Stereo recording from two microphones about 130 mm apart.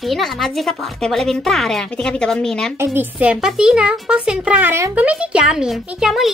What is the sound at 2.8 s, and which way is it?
A child's voice, 15° right (ahead or behind).